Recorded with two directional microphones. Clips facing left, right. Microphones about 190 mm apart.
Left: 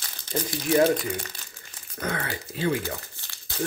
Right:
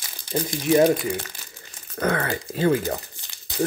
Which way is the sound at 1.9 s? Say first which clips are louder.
Right 7 dB; 60° right (ahead or behind).